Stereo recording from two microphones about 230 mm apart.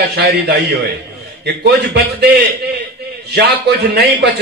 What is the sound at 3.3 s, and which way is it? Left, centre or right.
Speech, right.